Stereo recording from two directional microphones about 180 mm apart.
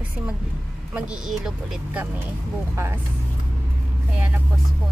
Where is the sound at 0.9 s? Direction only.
5° right (ahead or behind).